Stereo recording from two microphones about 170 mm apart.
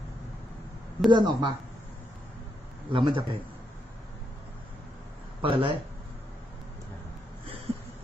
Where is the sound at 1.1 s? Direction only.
25° right (ahead or behind).